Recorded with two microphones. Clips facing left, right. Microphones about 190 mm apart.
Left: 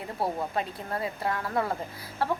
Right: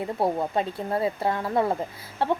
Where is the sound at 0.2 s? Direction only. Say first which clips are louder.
Right 4 dB; 25° right (ahead or behind).